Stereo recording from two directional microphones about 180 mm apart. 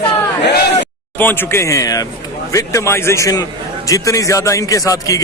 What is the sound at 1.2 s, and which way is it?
A man's voice, 10° left (ahead or behind).